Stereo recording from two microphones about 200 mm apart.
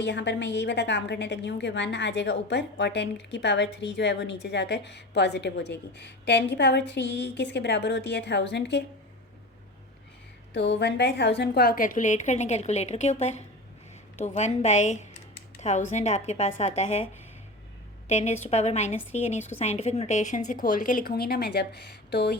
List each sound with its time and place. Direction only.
0.0 s a woman's voice: 60° left (ahead or behind)
10.5 s a woman's voice: 60° left (ahead or behind); by 17.1 s 35° left (ahead or behind)
18.1 s a woman's voice: 35° left (ahead or behind); by 22.4 s 55° left (ahead or behind)